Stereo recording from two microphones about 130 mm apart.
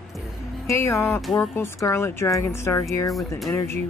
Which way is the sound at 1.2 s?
10° left (ahead or behind).